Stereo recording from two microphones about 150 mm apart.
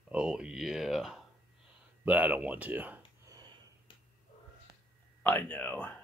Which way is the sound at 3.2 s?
25° right (ahead or behind).